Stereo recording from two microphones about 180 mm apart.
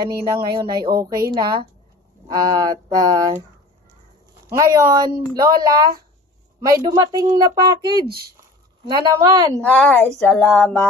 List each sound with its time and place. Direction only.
0.0 s speech: 20° right (ahead or behind)
4.6 s speech: 20° right (ahead or behind)
8.4 s a sound: 25° right (ahead or behind)
9.6 s speech: 10° left (ahead or behind)